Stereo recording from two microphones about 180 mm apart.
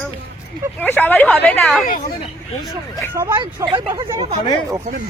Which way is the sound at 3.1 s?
20° right (ahead or behind).